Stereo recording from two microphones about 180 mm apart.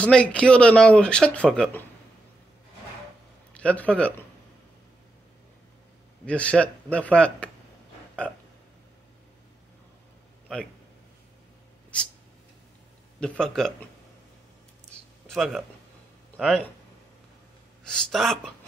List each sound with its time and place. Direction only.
0.0 s speech: 5° left (ahead or behind)
3.5 s a man's voice: 5° left (ahead or behind)
6.2 s a man's voice: 5° left (ahead or behind)
13.2 s speech: 5° left (ahead or behind)
15.2 s speech: centre (ahead or behind)
17.9 s speech: centre (ahead or behind)